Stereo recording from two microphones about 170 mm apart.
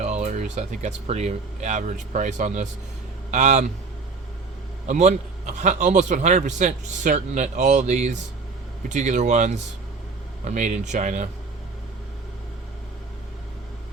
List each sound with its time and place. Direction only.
0.0 s a man's voice: 40° right (ahead or behind)
4.9 s a man's voice: 45° right (ahead or behind)